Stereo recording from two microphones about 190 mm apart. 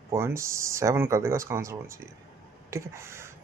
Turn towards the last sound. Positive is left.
turn(degrees=-15)  # may be behind; listen again after turning